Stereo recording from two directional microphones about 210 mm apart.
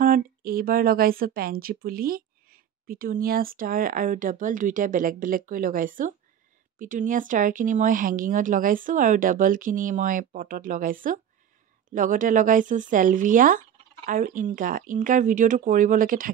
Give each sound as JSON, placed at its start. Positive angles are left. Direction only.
{"t": 0.0, "sound": "speech", "side_deg": -45}